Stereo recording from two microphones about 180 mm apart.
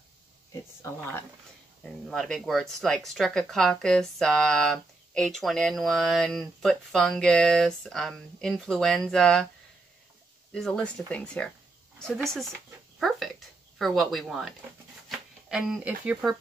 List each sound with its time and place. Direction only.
0.5 s speech: 15° left (ahead or behind)
1.8 s speech: 5° left (ahead or behind)
10.5 s speech: 5° left (ahead or behind)
12.0 s a sound: centre (ahead or behind)
15.0 s speech: centre (ahead or behind)